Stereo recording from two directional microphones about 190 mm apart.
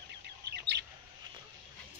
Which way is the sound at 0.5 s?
60° right (ahead or behind).